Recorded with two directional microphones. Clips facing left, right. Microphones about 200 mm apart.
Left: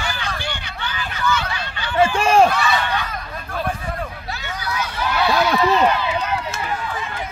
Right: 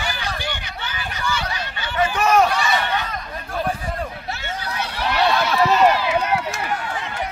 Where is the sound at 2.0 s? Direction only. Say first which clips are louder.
Left 3 dB; 30° left (ahead or behind).